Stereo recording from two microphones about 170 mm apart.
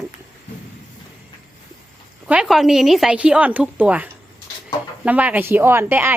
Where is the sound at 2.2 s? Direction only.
5° right (ahead or behind).